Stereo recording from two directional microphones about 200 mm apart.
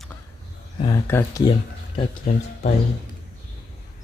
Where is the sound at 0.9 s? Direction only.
15° left (ahead or behind).